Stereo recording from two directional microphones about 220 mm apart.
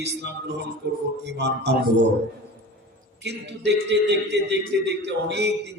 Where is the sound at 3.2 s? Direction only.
50° right (ahead or behind).